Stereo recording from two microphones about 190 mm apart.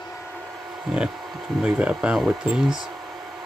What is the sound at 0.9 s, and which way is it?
Speech, 5° right (ahead or behind).